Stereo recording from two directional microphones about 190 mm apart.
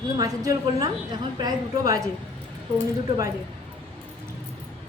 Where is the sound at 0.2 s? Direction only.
20° right (ahead or behind).